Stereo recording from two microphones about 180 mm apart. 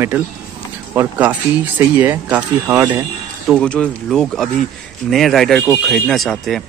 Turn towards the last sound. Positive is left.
turn(degrees=0)  # may be behind; listen again after turning